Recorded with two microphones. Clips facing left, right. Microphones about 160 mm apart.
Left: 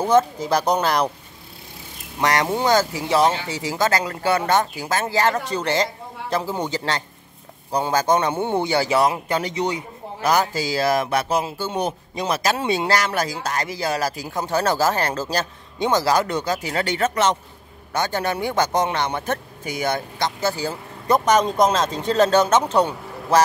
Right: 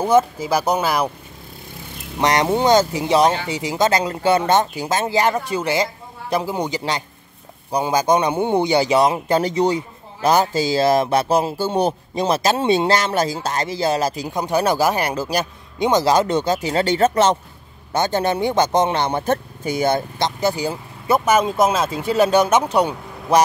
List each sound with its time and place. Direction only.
0.0 s speech: 5° right (ahead or behind)
2.1 s speech: 20° right (ahead or behind)
9.3 s speech: 35° right (ahead or behind); by 23.4 s 15° right (ahead or behind)